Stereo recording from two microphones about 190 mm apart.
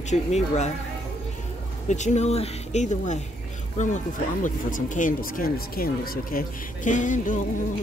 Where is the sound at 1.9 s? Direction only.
40° left (ahead or behind).